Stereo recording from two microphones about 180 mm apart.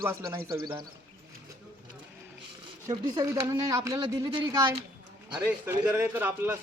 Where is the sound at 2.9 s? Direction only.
20° right (ahead or behind).